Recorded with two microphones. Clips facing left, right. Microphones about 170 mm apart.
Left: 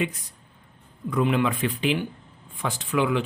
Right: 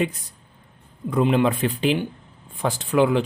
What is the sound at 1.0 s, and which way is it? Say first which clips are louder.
Speech: right 4 dB; 30° right (ahead or behind).